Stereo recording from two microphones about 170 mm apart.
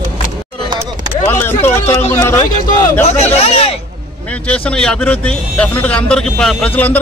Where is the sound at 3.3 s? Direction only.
35° left (ahead or behind).